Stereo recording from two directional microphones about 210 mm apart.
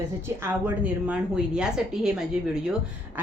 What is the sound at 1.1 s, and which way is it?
A woman's voice, 5° right (ahead or behind).